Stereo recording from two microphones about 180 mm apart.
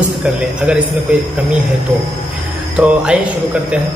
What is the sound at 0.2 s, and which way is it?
Speech, 5° right (ahead or behind).